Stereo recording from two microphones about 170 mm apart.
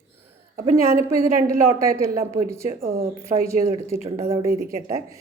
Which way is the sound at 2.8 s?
60° right (ahead or behind).